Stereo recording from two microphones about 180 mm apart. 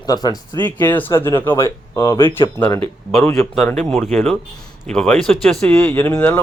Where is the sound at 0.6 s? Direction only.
10° left (ahead or behind).